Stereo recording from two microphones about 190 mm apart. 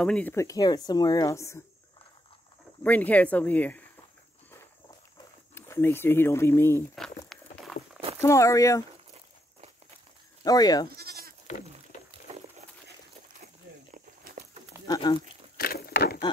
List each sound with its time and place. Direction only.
0.0 s speech: 5° left (ahead or behind)
2.8 s speech: 10° left (ahead or behind)
5.5 s speech: 10° left (ahead or behind)
7.2 s a sound: 5° left (ahead or behind)
8.2 s speech: 15° left (ahead or behind)
10.4 s speech: 20° left (ahead or behind)
11.0 s goat: 55° right (ahead or behind)
15.0 s speech: 20° left (ahead or behind)
15.5 s a sound: 55° left (ahead or behind)